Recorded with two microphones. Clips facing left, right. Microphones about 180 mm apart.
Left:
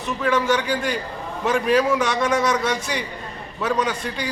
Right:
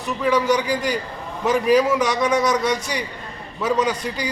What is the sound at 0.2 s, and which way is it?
A man's voice, centre (ahead or behind).